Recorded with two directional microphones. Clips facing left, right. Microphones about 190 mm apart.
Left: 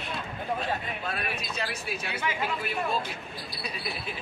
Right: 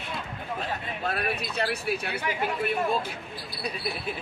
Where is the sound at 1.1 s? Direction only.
60° right (ahead or behind).